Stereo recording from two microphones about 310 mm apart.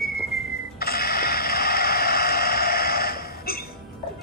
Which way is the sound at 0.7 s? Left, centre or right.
Left.